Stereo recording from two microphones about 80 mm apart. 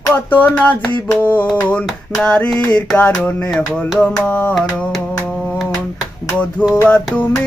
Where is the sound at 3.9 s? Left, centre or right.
Centre.